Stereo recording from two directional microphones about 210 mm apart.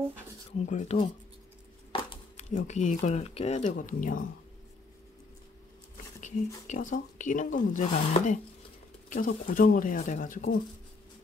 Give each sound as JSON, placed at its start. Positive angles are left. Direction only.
{"t": 0.5, "sound": "speech", "side_deg": 35}
{"t": 1.9, "sound": "a sound", "side_deg": 25}
{"t": 2.5, "sound": "speech", "side_deg": 35}
{"t": 6.2, "sound": "speech", "side_deg": 35}